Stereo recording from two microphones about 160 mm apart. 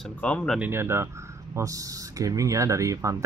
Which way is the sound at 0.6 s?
15° right (ahead or behind).